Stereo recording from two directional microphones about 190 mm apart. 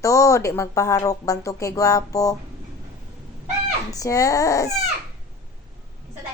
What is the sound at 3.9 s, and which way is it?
Speech, 15° left (ahead or behind).